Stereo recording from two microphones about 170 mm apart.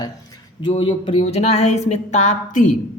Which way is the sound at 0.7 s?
30° left (ahead or behind).